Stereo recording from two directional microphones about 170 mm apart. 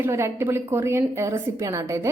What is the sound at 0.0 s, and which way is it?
A woman's voice, 15° right (ahead or behind).